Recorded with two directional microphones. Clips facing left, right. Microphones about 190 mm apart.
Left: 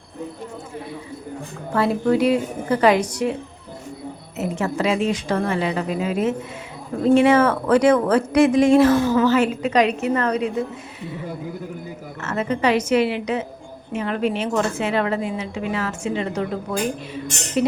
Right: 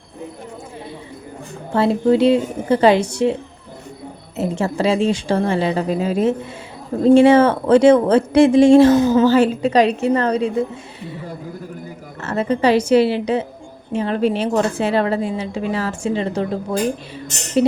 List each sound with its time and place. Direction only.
1.7 s speech: 25° right (ahead or behind)
4.4 s a woman's voice: 30° right (ahead or behind)
9.2 s a woman's voice: 30° right (ahead or behind)
12.2 s a woman's voice: 35° right (ahead or behind)